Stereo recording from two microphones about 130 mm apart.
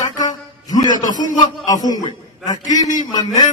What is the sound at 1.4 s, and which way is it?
A man's voice, 30° left (ahead or behind).